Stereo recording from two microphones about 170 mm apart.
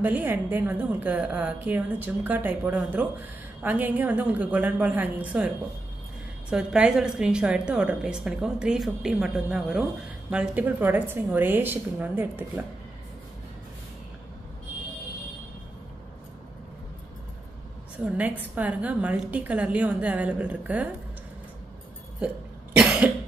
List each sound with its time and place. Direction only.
0.0 s a woman's voice: 10° right (ahead or behind)
6.5 s a woman's voice: 5° right (ahead or behind)
17.9 s a woman's voice: 10° right (ahead or behind)
22.2 s cough: 5° right (ahead or behind)